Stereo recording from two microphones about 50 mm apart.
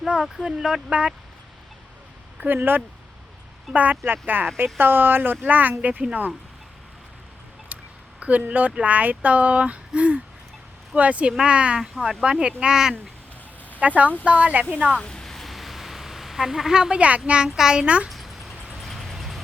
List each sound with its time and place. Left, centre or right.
0.3 s speech: centre
0.9 s speech: right
2.4 s speech: right
4.0 s speech: right
5.8 s speech: right
7.7 s a sound: right
8.2 s speech: right
11.3 s speech: centre
11.8 s speech: centre
12.2 s speech: centre
13.7 s speech: right
14.9 s speech: centre; by 18.1 s right
18.1 s a sound: centre
18.8 s vehicle: centre